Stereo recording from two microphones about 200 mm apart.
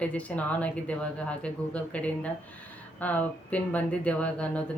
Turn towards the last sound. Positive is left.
turn(degrees=5)  # may be behind; listen again after turning